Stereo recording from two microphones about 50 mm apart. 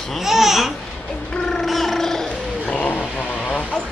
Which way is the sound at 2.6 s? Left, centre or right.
Left.